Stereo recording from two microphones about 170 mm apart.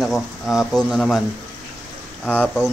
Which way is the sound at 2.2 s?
10° left (ahead or behind).